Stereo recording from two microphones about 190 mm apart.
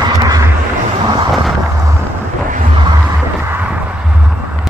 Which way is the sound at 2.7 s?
25° right (ahead or behind).